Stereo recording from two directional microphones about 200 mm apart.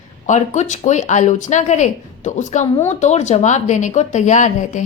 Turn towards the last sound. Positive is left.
turn(degrees=35)  # may be behind; listen again after turning